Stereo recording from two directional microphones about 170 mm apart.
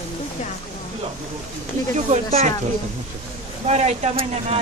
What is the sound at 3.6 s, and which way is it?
Speech, 40° right (ahead or behind).